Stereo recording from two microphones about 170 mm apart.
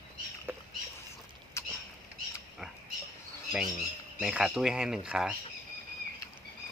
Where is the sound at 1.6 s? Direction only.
15° left (ahead or behind).